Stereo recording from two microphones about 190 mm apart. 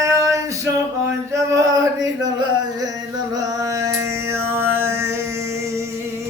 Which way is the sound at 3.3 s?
15° right (ahead or behind).